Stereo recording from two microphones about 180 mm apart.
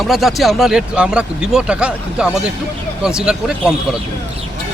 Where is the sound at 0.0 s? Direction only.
Centre (ahead or behind).